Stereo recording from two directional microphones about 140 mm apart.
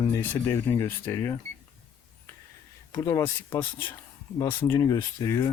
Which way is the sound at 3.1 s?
20° left (ahead or behind).